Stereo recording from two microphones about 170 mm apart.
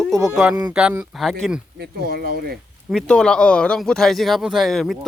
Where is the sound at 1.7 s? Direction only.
70° right (ahead or behind).